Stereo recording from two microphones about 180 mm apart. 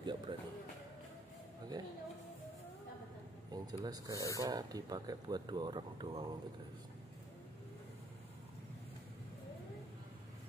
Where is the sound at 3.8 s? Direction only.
20° right (ahead or behind).